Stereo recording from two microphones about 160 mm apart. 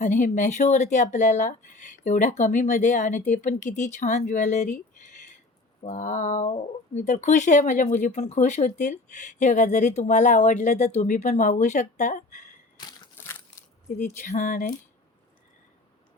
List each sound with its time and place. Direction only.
0.0 s speech: 50° left (ahead or behind)
4.9 s a sound: 50° left (ahead or behind)
5.8 s speech: 50° left (ahead or behind)
12.7 s crushing: 25° left (ahead or behind)
14.2 s speech: 50° left (ahead or behind)